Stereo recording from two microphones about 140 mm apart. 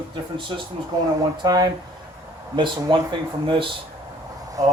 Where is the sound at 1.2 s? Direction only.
30° right (ahead or behind).